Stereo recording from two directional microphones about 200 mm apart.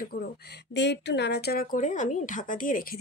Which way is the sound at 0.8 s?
60° left (ahead or behind).